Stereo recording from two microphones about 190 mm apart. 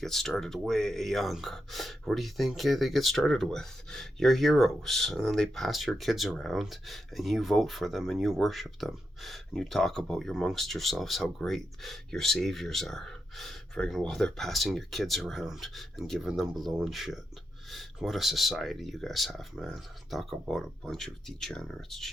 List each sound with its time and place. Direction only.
0.0 s speech: centre (ahead or behind)